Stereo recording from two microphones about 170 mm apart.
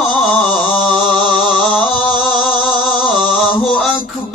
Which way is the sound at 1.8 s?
35° left (ahead or behind).